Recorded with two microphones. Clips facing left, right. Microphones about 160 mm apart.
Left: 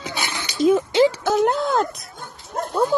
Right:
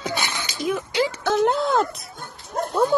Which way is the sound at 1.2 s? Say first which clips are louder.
Left 1 dB; centre (ahead or behind).